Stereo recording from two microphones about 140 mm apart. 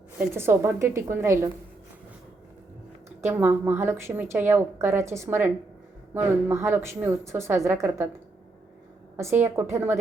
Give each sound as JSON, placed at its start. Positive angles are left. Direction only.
{"t": 0.3, "sound": "a woman's voice", "side_deg": -15}
{"t": 3.2, "sound": "a woman's voice", "side_deg": -15}
{"t": 9.1, "sound": "a woman's voice", "side_deg": -15}